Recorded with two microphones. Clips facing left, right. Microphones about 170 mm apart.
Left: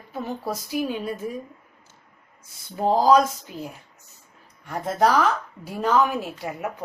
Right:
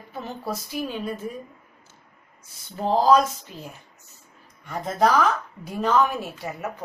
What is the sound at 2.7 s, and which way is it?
Speech, 10° left (ahead or behind).